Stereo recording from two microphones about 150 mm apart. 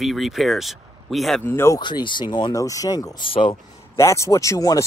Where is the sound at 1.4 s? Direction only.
15° left (ahead or behind).